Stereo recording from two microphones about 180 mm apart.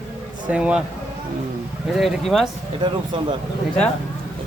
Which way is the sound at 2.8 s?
25° right (ahead or behind).